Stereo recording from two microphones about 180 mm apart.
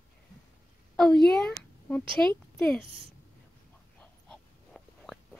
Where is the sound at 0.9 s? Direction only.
Centre (ahead or behind).